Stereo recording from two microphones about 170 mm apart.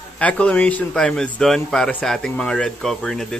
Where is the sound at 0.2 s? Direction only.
10° left (ahead or behind).